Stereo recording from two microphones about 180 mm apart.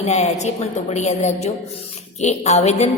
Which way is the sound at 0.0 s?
40° left (ahead or behind).